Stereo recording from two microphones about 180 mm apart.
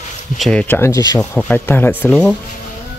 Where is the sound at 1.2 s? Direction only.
5° left (ahead or behind).